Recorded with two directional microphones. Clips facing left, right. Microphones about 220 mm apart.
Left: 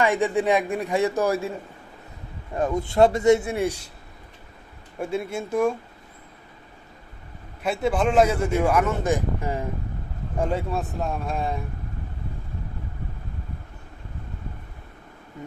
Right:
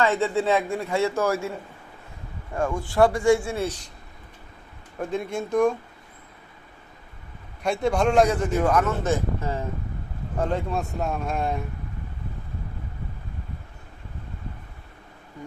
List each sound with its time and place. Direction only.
0.0 s speech: 15° left (ahead or behind)
2.6 s a man's voice: 20° left (ahead or behind)
4.9 s speech: 10° left (ahead or behind)
7.6 s speech: 5° left (ahead or behind)